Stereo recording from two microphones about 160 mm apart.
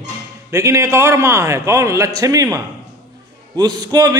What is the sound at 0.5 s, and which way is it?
A man's voice, 20° right (ahead or behind).